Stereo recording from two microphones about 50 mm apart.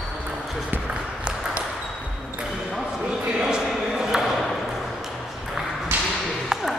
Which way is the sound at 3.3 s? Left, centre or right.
Centre.